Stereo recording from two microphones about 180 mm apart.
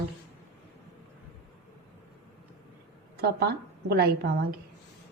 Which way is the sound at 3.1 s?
65° right (ahead or behind).